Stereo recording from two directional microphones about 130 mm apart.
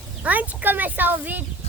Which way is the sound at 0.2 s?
10° right (ahead or behind).